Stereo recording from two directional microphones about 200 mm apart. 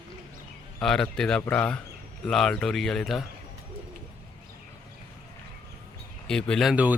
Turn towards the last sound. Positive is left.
turn(degrees=-5)  # may be behind; listen again after turning